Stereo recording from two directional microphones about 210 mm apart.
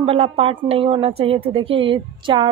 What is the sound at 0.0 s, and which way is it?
A woman's voice, 25° right (ahead or behind).